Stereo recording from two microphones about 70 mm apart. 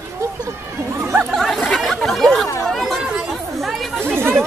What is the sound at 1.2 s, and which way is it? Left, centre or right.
Chatter, centre.